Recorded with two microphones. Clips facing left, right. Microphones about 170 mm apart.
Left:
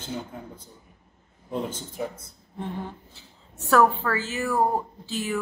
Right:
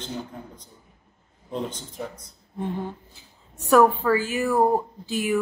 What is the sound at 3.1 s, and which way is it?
A woman's voice, 15° right (ahead or behind).